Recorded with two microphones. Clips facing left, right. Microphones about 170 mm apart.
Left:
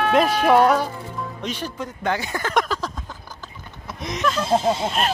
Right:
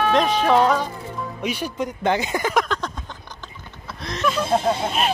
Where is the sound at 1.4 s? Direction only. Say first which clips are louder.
Right 5 dB; 10° right (ahead or behind).